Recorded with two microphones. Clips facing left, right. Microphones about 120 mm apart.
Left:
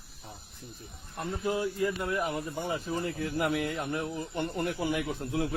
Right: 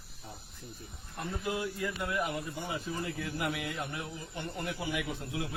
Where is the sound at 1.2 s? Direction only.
35° left (ahead or behind).